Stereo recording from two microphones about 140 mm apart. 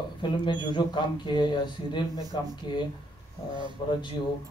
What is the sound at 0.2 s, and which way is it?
Speech, 30° left (ahead or behind).